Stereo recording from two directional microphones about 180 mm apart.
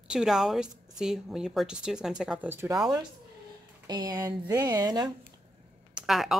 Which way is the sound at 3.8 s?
20° right (ahead or behind).